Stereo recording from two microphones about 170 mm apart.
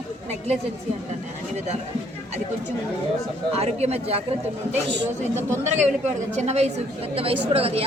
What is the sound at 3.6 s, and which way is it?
Speech, 40° right (ahead or behind).